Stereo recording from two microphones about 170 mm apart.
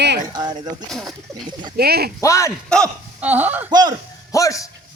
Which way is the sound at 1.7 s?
65° right (ahead or behind).